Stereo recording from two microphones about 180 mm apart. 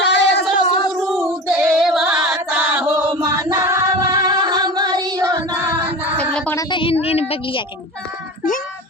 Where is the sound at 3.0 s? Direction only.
20° right (ahead or behind).